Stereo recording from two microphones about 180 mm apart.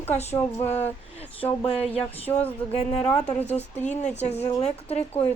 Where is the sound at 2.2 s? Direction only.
10° left (ahead or behind).